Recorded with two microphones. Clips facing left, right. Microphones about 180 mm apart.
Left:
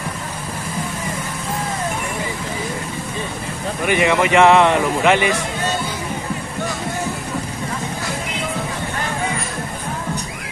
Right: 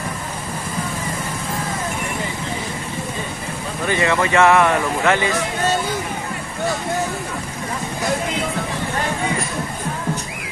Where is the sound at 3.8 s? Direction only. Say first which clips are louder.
Left 2 dB; 15° left (ahead or behind).